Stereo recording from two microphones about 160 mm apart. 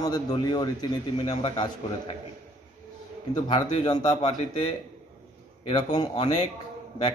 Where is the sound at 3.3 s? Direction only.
25° left (ahead or behind).